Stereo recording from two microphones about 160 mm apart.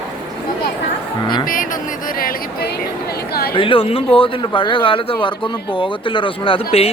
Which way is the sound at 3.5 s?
35° left (ahead or behind).